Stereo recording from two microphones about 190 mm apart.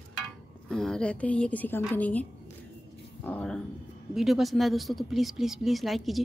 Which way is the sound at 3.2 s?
5° left (ahead or behind).